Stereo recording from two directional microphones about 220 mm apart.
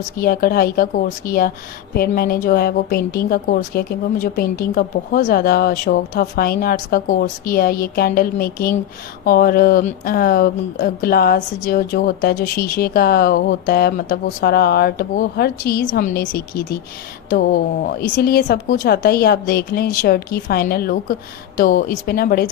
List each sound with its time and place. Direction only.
0.2 s a woman's voice: 40° left (ahead or behind)
18.2 s a woman's voice: 45° left (ahead or behind)